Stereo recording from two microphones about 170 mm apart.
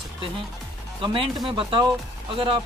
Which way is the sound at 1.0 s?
30° right (ahead or behind).